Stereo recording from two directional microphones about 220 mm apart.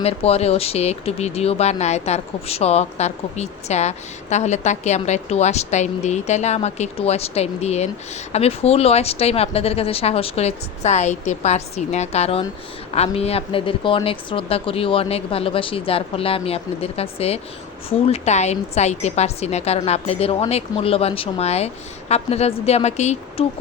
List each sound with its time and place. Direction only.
0.0 s speech: 30° left (ahead or behind)